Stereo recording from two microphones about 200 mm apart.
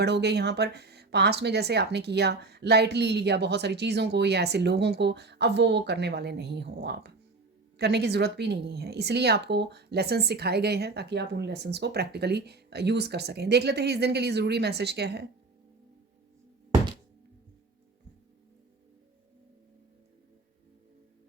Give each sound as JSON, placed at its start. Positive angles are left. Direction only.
{"t": 0.0, "sound": "speech", "side_deg": -55}